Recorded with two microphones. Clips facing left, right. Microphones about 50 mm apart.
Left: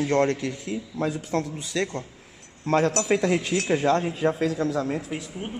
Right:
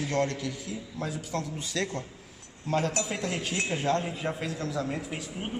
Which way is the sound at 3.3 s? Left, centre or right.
Left.